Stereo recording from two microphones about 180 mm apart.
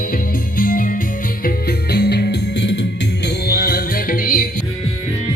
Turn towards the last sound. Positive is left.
turn(degrees=50)  # may be behind; listen again after turning